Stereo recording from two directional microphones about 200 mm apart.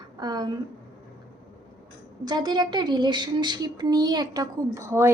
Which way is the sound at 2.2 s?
20° right (ahead or behind).